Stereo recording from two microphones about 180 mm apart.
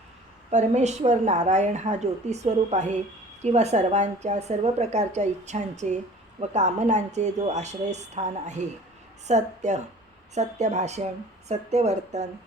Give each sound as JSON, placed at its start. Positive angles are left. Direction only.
{"t": 0.5, "sound": "a woman's voice", "side_deg": -40}